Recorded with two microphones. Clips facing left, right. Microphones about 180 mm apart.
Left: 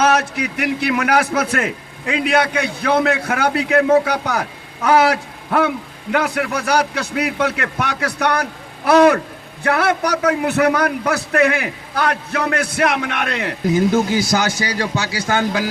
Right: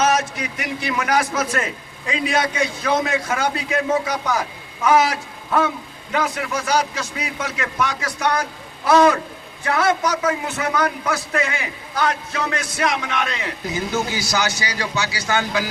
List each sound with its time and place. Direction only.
0.0 s a man's voice: 60° left (ahead or behind)